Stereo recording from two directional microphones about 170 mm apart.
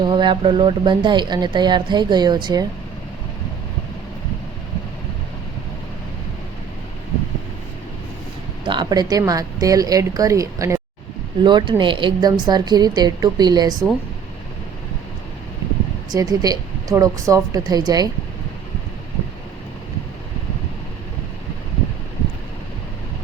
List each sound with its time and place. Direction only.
0.0 s speech: 25° right (ahead or behind)
8.6 s speech: 25° right (ahead or behind)
16.1 s speech: 20° right (ahead or behind)